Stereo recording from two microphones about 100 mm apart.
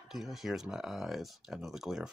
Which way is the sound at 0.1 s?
5° right (ahead or behind).